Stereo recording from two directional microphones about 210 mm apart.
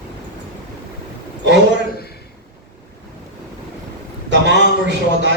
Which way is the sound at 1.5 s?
55° right (ahead or behind).